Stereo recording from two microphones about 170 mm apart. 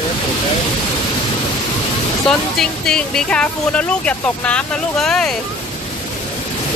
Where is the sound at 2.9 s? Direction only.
5° left (ahead or behind).